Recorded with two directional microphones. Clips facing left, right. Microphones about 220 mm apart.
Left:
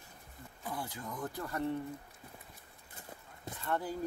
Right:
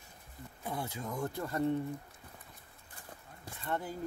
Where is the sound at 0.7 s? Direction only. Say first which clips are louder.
Right 3 dB; 25° right (ahead or behind).